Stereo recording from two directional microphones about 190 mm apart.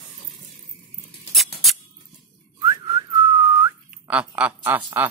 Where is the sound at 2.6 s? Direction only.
20° right (ahead or behind).